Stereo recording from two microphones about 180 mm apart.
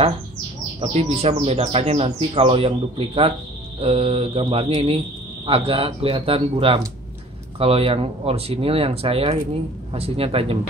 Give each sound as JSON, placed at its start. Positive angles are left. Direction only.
{"t": 0.7, "sound": "speech", "side_deg": -35}